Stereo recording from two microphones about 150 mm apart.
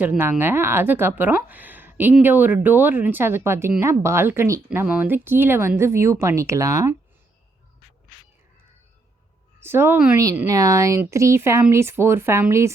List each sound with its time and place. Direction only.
0.0 s speech: 15° right (ahead or behind)
9.6 s speech: 15° right (ahead or behind)